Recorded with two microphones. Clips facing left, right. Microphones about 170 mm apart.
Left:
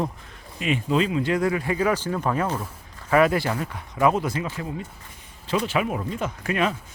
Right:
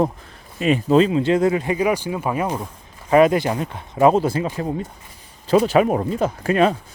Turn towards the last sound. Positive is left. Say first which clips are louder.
# right 7 dB
turn(degrees=-35)  # may be behind; listen again after turning